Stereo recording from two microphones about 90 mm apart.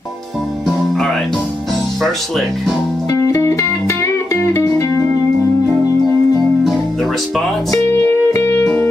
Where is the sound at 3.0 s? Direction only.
35° left (ahead or behind).